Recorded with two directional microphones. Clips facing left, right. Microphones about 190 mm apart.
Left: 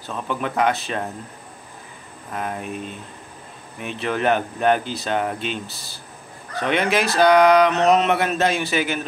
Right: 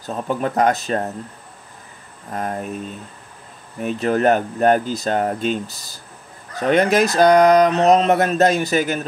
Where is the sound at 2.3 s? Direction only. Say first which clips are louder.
Right 3 dB; 40° right (ahead or behind).